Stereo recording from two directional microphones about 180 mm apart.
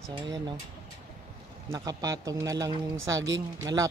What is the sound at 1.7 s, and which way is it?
Speech, 20° right (ahead or behind).